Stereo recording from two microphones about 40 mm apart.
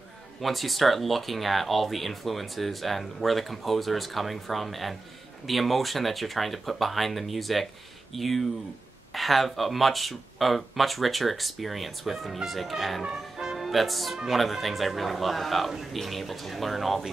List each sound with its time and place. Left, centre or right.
0.4 s speech: centre
13.0 s music: centre
13.7 s speech: centre